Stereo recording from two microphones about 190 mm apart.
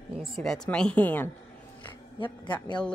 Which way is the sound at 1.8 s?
25° left (ahead or behind).